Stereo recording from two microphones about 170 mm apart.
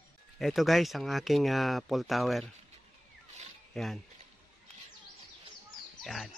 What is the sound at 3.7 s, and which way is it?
Speech, centre (ahead or behind).